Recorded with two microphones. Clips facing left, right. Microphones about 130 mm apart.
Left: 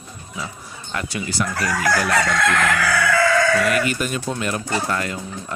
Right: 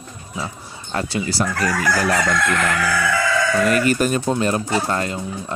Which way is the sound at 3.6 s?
40° right (ahead or behind).